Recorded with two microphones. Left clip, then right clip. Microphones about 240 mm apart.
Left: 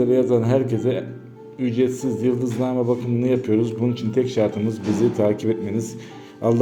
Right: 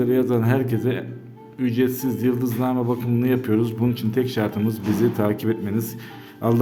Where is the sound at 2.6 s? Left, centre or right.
Right.